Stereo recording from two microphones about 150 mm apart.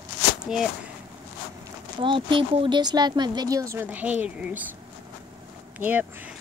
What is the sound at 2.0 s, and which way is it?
Speech, 35° right (ahead or behind).